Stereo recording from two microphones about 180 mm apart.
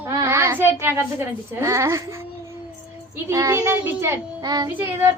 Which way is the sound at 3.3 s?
15° right (ahead or behind).